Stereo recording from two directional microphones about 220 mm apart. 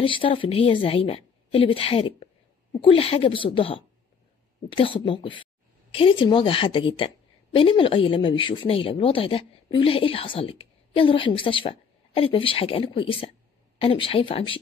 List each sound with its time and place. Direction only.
0.0 s speech: 25° left (ahead or behind)